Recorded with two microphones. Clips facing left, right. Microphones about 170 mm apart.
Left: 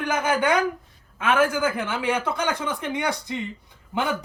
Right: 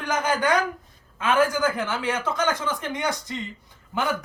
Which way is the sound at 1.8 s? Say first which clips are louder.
Left 1 dB; 10° left (ahead or behind).